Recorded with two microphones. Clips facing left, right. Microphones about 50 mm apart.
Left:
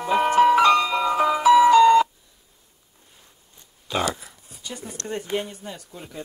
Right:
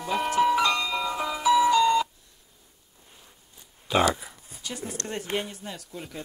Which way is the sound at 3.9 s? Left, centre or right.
Centre.